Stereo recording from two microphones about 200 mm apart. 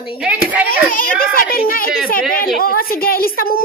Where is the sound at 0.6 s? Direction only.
45° left (ahead or behind).